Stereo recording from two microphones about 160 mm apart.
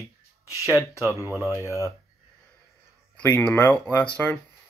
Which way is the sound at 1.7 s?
20° left (ahead or behind).